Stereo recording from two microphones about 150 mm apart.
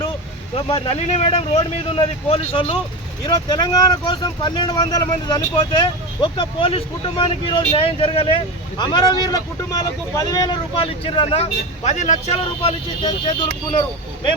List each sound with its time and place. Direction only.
0.5 s speech: 40° left (ahead or behind)
3.2 s speech: 25° left (ahead or behind)
11.0 s speech: 40° left (ahead or behind)